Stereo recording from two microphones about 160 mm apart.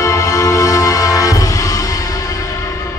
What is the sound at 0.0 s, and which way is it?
Music, 20° left (ahead or behind).